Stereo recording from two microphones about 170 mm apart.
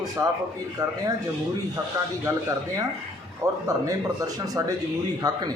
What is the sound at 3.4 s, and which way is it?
Speech, 20° right (ahead or behind).